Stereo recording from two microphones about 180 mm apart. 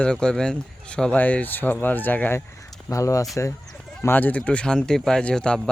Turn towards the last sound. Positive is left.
turn(degrees=5)  # may be behind; listen again after turning